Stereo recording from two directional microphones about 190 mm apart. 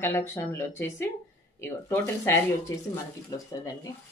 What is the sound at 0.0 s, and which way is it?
Speech, 15° left (ahead or behind).